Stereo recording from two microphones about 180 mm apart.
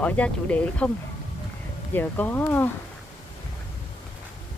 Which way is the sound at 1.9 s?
10° left (ahead or behind).